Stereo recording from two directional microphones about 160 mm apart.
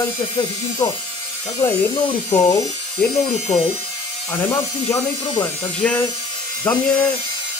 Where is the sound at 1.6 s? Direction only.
10° left (ahead or behind).